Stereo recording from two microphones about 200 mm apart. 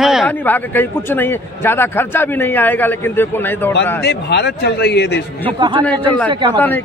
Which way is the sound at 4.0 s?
55° left (ahead or behind).